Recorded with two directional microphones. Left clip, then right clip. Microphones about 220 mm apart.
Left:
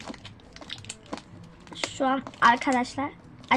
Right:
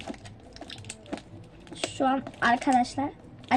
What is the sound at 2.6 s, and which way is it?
Child singing, 10° left (ahead or behind).